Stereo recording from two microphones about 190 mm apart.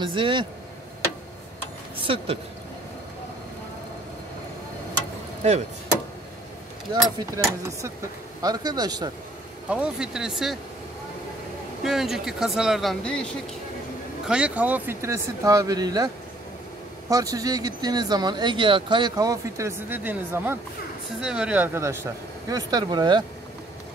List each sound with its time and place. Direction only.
0.0 s speech: 25° right (ahead or behind)
2.0 s speech: 30° right (ahead or behind)
6.9 s speech: 20° right (ahead or behind)
9.7 s speech: 5° right (ahead or behind)
11.8 s speech: centre (ahead or behind)
14.2 s speech: 5° right (ahead or behind)
17.1 s speech: 20° right (ahead or behind)